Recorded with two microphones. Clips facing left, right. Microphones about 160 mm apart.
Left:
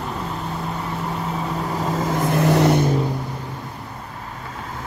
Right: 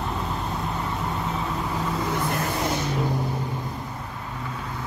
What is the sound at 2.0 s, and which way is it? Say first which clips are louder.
Vehicle: left 8 dB; 70° left (ahead or behind).